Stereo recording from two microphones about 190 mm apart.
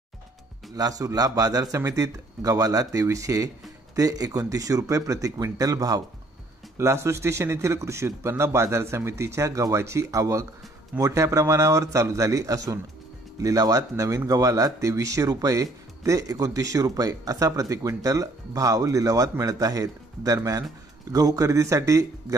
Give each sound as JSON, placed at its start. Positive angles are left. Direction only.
{"t": 0.7, "sound": "a man's voice", "side_deg": -20}